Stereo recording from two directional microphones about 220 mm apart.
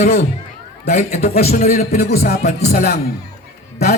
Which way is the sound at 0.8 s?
30° left (ahead or behind).